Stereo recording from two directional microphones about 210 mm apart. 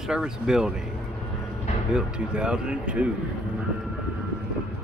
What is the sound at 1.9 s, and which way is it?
Speech, 5° right (ahead or behind).